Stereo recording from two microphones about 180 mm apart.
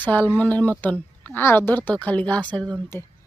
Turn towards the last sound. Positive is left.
turn(degrees=10)  # may be behind; listen again after turning